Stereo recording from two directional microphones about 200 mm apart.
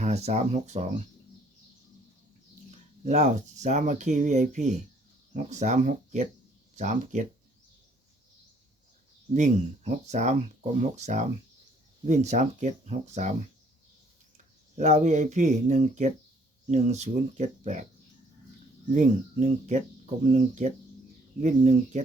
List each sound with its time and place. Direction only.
0.0 s speech: 35° right (ahead or behind)
2.6 s speech: 35° right (ahead or behind)
9.3 s speech: 35° right (ahead or behind)
14.8 s speech: 35° right (ahead or behind)
18.9 s speech: 35° right (ahead or behind)